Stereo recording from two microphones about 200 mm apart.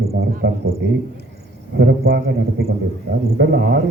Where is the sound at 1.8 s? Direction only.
60° right (ahead or behind).